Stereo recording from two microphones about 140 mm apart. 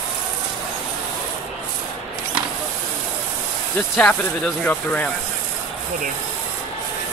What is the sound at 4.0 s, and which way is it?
Speech, 10° left (ahead or behind).